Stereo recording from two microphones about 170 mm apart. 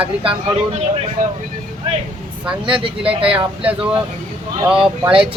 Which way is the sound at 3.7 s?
5° right (ahead or behind).